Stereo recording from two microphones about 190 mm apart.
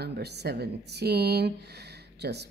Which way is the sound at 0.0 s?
60° right (ahead or behind).